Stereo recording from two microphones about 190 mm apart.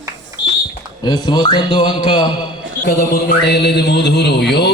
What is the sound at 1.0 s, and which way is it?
A man's voice, 20° left (ahead or behind).